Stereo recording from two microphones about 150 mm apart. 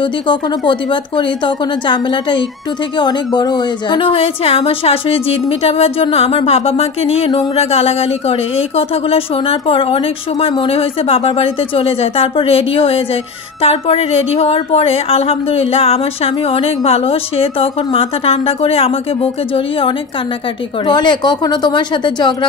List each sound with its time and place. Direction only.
0.0 s speech: 30° left (ahead or behind)